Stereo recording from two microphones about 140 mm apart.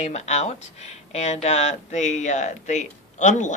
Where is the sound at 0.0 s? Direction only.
55° left (ahead or behind).